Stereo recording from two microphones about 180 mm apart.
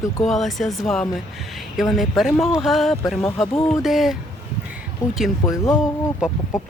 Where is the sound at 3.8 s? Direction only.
Centre (ahead or behind).